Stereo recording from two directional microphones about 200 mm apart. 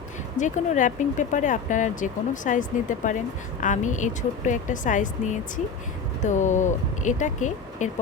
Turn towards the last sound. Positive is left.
turn(degrees=40)  # may be behind; listen again after turning